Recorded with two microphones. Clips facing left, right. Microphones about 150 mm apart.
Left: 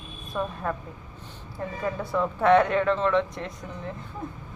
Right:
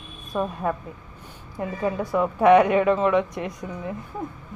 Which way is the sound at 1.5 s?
15° right (ahead or behind).